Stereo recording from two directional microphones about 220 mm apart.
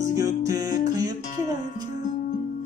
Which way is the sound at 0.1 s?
15° right (ahead or behind).